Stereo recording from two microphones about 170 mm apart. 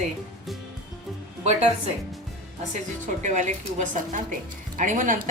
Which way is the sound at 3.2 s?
45° right (ahead or behind).